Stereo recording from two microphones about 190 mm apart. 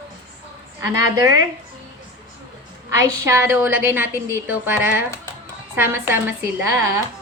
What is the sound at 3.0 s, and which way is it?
A woman's voice, 15° right (ahead or behind).